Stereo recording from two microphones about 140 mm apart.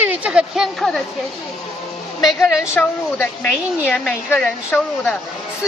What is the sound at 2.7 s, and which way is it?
Speech, 15° left (ahead or behind).